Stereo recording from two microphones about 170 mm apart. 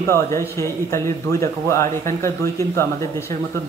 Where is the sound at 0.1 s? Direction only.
15° left (ahead or behind).